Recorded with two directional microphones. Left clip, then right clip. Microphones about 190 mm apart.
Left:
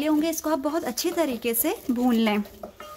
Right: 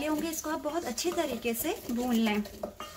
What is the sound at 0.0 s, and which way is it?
A woman's voice, 45° left (ahead or behind).